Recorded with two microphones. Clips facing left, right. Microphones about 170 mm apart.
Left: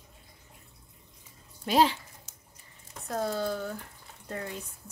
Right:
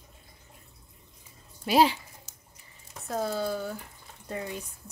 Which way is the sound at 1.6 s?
10° right (ahead or behind).